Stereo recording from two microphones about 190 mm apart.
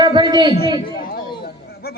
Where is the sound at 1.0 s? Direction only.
55° left (ahead or behind).